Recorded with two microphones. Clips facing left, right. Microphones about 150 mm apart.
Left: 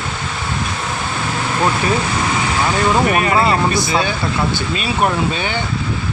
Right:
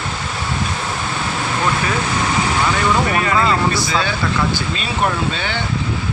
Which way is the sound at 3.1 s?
20° left (ahead or behind).